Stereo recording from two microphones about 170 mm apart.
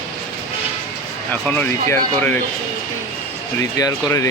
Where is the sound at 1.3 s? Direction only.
10° left (ahead or behind).